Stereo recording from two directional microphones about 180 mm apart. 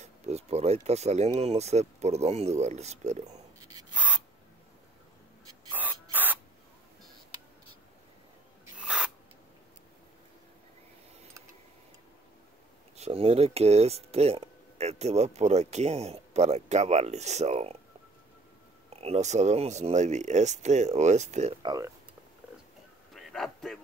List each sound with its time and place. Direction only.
0.0 s speech: 35° right (ahead or behind)
3.5 s a sound: 20° right (ahead or behind)
3.9 s spray: 5° right (ahead or behind)
5.7 s spray: 10° right (ahead or behind)
8.7 s rub: 5° right (ahead or behind)
12.9 s speech: 35° right (ahead or behind)
18.9 s speech: 35° right (ahead or behind)
21.6 s speech: 20° right (ahead or behind)
23.3 s a sound: centre (ahead or behind)